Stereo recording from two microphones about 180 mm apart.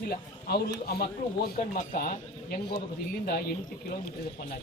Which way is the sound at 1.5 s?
50° left (ahead or behind).